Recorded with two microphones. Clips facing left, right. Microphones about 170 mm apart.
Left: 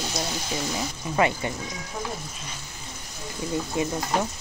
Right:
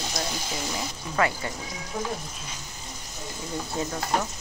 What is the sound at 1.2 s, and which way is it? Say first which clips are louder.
Speech: left 2 dB; 20° left (ahead or behind).